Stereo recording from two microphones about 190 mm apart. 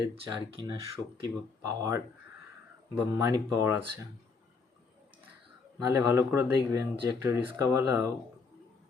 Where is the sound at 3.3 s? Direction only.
15° right (ahead or behind).